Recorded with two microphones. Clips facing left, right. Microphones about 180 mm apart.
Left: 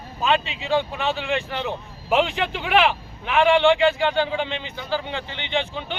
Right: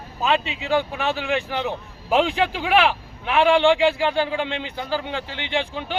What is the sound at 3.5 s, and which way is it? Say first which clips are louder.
Speech: even; 10° right (ahead or behind).